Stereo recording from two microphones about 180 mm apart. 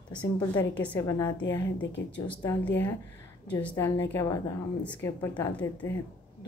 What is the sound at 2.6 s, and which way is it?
Speech, 10° left (ahead or behind).